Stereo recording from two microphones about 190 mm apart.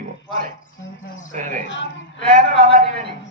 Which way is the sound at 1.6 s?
70° left (ahead or behind).